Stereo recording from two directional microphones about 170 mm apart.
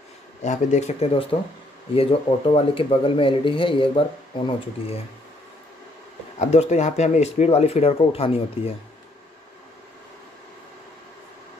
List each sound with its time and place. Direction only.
0.4 s speech: 45° left (ahead or behind)
6.4 s speech: 40° left (ahead or behind)